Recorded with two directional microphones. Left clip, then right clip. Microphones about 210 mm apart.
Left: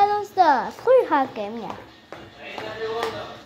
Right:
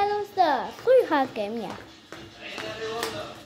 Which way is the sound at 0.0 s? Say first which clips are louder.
Left 5 dB; 15° left (ahead or behind).